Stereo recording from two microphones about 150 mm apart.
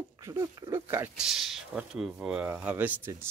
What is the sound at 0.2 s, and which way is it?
Speech, 20° right (ahead or behind).